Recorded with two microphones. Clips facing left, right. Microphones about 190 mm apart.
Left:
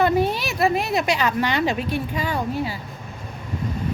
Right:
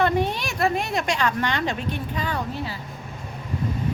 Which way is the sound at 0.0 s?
5° left (ahead or behind).